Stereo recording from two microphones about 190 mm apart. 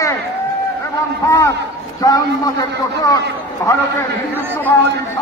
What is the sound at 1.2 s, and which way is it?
A man's voice, 15° left (ahead or behind).